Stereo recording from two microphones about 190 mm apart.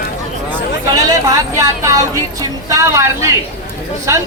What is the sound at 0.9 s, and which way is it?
Speech, 20° right (ahead or behind).